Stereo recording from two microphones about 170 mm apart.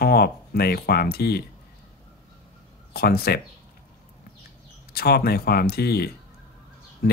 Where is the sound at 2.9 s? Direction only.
65° left (ahead or behind).